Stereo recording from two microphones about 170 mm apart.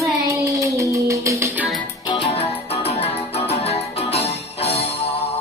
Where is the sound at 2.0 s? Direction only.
30° left (ahead or behind).